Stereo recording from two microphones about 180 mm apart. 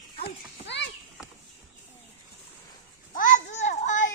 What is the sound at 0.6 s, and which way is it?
Clip-clop, 75° left (ahead or behind).